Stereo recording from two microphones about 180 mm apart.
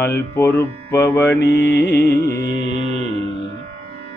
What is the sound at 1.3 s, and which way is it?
Carnatic music, 65° left (ahead or behind).